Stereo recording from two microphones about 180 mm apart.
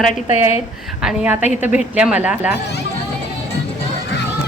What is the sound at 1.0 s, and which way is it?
A woman's voice, 5° right (ahead or behind).